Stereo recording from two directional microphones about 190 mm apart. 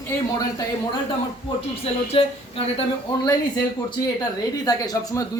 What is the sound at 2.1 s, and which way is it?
Speech, 30° left (ahead or behind).